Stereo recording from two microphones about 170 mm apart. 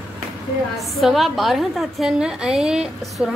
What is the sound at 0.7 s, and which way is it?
A woman's voice, centre (ahead or behind).